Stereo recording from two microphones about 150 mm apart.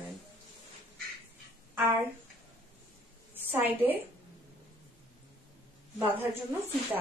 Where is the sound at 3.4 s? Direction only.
15° right (ahead or behind).